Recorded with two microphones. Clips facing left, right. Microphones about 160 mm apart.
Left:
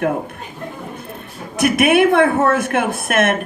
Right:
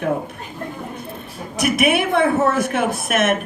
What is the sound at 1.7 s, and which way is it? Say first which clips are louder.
Speech: left 5 dB; 55° left (ahead or behind).